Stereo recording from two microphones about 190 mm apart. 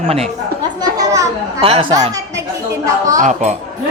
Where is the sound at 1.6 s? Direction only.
30° right (ahead or behind).